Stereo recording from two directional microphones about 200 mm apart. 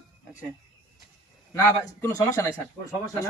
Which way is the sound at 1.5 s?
15° left (ahead or behind).